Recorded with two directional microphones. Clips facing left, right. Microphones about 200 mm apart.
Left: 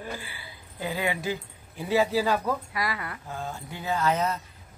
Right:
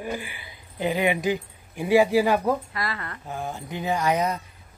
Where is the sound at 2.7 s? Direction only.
10° left (ahead or behind).